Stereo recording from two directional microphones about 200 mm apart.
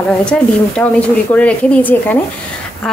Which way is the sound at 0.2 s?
5° left (ahead or behind).